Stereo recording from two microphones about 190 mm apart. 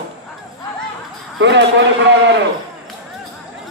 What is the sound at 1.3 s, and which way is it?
A man's voice, 65° right (ahead or behind).